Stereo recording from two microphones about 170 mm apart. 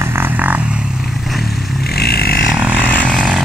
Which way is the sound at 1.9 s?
65° left (ahead or behind).